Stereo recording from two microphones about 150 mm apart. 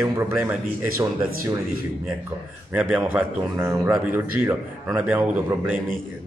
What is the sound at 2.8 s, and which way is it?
Speech, 10° right (ahead or behind).